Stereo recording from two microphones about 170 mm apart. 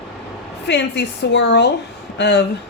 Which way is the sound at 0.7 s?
85° left.